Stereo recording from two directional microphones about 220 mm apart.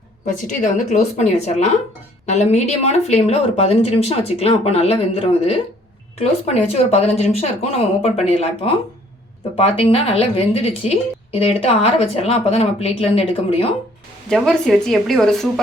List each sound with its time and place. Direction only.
0.3 s a woman's voice: 35° left (ahead or behind)
14.3 s a woman's voice: 5° left (ahead or behind)